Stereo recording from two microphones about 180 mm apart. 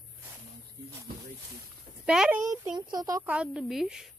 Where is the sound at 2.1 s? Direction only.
5° right (ahead or behind).